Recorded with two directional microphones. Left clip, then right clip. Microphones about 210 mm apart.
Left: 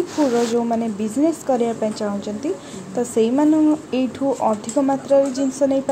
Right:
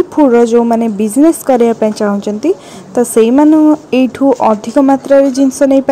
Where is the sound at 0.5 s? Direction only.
40° right (ahead or behind).